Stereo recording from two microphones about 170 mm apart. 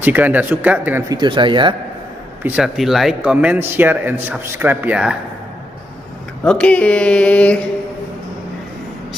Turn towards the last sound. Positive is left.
turn(degrees=5)  # may be behind; listen again after turning